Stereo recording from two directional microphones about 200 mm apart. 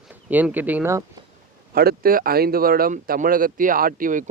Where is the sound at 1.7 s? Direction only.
50° right (ahead or behind).